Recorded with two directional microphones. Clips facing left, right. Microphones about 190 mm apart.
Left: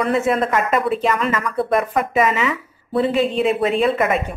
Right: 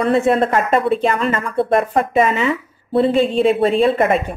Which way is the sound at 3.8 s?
30° right (ahead or behind).